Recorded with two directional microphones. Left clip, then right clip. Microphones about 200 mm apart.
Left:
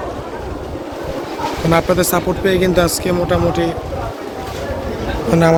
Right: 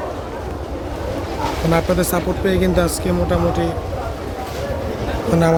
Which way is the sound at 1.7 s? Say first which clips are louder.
Left 4 dB; centre (ahead or behind).